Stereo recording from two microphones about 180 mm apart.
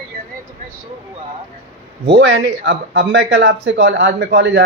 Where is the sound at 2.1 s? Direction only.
75° right (ahead or behind).